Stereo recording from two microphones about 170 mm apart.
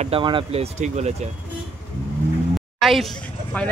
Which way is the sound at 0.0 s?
30° right (ahead or behind).